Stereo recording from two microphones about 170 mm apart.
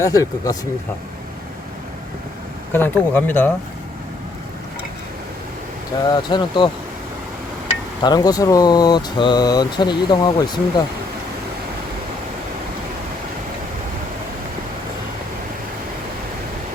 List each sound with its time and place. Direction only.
0.0 s speech: 20° left (ahead or behind)
2.7 s speech: 10° left (ahead or behind)
5.9 s speech: 25° left (ahead or behind)
8.0 s speech: 25° left (ahead or behind)